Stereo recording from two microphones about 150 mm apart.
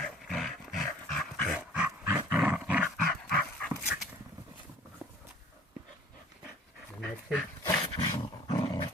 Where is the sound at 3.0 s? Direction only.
5° left (ahead or behind).